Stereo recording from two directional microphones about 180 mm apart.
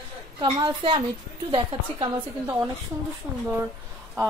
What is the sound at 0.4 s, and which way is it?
Speech, 25° right (ahead or behind).